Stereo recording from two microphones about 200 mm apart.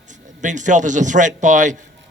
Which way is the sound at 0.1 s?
40° right (ahead or behind).